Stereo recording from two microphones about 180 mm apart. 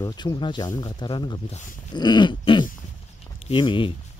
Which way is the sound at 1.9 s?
25° left (ahead or behind).